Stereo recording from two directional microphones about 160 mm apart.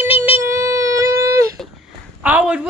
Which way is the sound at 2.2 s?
10° right (ahead or behind).